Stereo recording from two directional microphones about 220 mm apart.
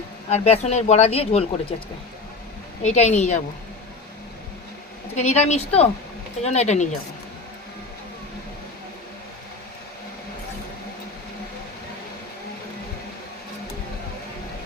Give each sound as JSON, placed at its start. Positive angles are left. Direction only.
{"t": 0.3, "sound": "speech", "side_deg": 30}
{"t": 2.8, "sound": "a woman's voice", "side_deg": 30}
{"t": 5.1, "sound": "a woman's voice", "side_deg": 30}